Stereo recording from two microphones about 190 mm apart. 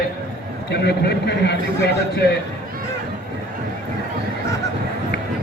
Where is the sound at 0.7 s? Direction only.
65° left (ahead or behind).